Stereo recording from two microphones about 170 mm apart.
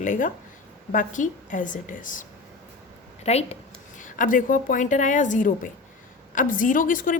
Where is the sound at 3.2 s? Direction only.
40° left (ahead or behind).